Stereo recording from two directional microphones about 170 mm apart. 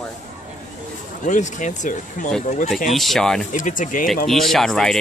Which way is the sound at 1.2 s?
45° left (ahead or behind).